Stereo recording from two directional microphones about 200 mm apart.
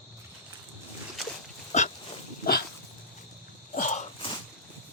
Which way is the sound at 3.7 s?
35° left (ahead or behind).